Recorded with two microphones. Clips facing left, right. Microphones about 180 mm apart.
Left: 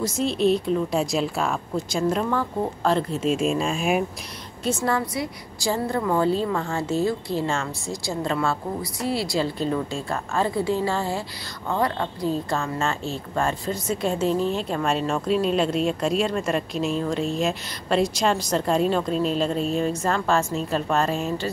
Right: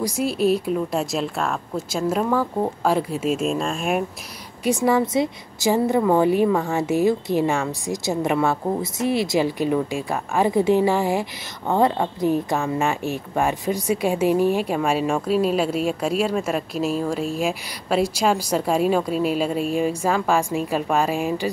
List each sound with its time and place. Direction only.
0.0 s speech: 10° right (ahead or behind)
4.6 s a woman's voice: 15° right (ahead or behind)